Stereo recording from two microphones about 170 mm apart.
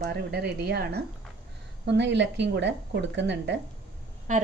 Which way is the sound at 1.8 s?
90° right.